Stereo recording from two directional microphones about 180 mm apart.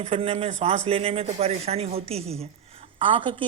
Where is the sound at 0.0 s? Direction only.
30° right (ahead or behind).